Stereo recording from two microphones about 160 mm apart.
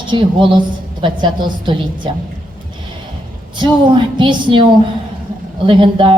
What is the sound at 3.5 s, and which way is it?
Speech, 30° right (ahead or behind).